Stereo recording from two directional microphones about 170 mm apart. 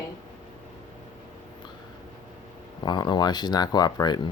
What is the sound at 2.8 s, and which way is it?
Speech, 25° left (ahead or behind).